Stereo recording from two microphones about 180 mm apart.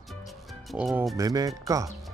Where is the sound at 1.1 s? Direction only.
20° right (ahead or behind).